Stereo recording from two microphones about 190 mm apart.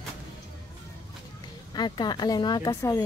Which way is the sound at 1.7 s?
20° left (ahead or behind).